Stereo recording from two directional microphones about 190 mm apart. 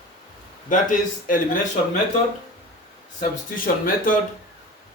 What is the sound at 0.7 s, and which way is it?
Speech, 45° left (ahead or behind).